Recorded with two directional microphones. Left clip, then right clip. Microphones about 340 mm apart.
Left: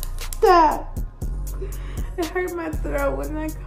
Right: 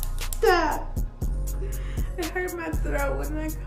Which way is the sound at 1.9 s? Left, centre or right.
Centre.